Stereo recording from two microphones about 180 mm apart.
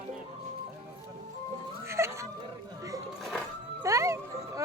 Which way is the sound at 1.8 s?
15° right (ahead or behind).